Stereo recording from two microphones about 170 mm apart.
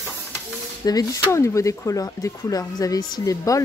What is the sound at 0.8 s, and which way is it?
A woman's voice, 20° left (ahead or behind).